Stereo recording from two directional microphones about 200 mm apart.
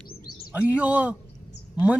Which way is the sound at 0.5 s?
5° right (ahead or behind).